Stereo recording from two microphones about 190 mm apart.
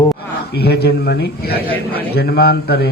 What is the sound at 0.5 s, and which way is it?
A man's voice, 60° left (ahead or behind).